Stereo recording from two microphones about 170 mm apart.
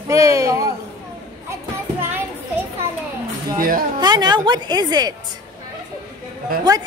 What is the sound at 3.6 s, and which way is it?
Speech, 55° right (ahead or behind).